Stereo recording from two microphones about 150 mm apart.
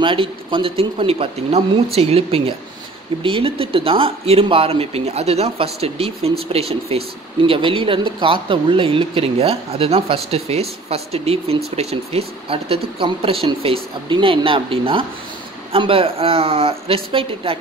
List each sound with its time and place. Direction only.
0.0 s speech: 35° right (ahead or behind)